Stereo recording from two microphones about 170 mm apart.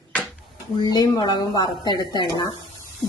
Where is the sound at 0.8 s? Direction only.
25° left (ahead or behind).